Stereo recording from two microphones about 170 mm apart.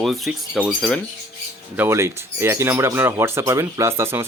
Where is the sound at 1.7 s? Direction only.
15° right (ahead or behind).